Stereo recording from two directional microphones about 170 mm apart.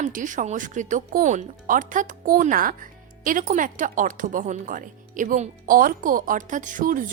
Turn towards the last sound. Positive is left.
turn(degrees=-55)  # may be behind; listen again after turning